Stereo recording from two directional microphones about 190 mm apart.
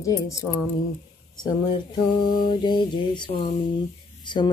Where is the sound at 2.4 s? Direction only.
25° left (ahead or behind).